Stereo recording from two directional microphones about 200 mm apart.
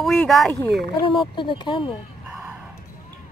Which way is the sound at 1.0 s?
25° left (ahead or behind).